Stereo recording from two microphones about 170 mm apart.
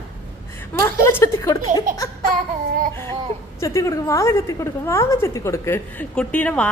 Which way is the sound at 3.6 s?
15° left (ahead or behind).